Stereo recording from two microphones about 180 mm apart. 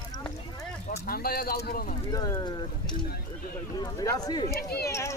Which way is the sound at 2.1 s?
20° left (ahead or behind).